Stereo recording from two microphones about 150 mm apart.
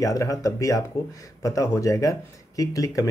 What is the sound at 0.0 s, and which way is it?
Speech, 20° left (ahead or behind).